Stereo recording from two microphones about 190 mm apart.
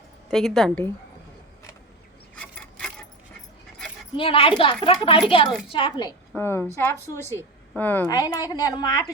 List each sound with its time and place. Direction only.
0.3 s a woman's voice: centre (ahead or behind)
2.3 s coin: 5° left (ahead or behind)
4.2 s a woman's voice: 30° left (ahead or behind)
6.3 s a woman's voice: 10° left (ahead or behind)